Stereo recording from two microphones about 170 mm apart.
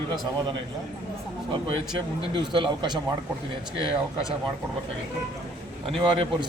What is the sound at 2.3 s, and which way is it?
Speech, 30° right (ahead or behind).